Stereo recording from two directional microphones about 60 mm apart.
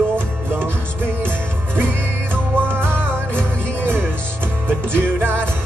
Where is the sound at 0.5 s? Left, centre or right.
Right.